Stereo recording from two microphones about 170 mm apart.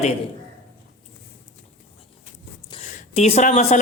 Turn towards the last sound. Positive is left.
turn(degrees=40)  # may be behind; listen again after turning